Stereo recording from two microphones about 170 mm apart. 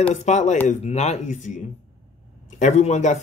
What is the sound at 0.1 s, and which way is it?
Speech, 45° left (ahead or behind).